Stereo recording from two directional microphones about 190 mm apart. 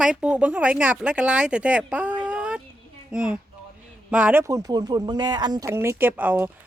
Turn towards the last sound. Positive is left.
turn(degrees=-10)  # may be behind; listen again after turning